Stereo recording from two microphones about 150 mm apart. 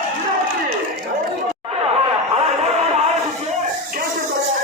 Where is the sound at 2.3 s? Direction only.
45° right (ahead or behind).